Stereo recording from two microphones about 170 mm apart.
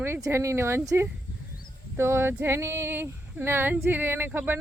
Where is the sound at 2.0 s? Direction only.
15° right (ahead or behind).